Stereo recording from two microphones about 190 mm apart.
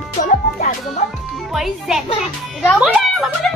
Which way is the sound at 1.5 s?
Centre (ahead or behind).